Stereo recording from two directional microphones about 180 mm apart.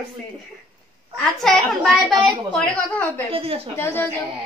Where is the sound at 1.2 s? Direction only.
5° left (ahead or behind).